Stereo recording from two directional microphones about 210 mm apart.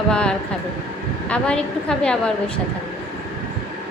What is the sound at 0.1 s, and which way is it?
A woman's voice, 5° left (ahead or behind).